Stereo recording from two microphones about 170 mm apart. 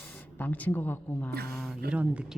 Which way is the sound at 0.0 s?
10° left (ahead or behind).